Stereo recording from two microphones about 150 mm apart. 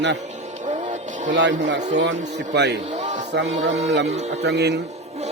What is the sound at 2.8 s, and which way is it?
Speech, 50° right (ahead or behind).